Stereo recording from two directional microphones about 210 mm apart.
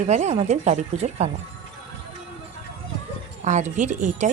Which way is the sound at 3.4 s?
35° right (ahead or behind).